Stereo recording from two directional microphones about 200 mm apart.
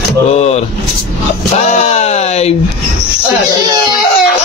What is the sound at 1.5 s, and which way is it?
Speech, 35° left (ahead or behind).